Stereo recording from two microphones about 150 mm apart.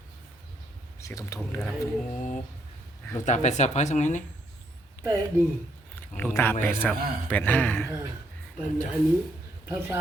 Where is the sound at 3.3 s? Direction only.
50° left (ahead or behind).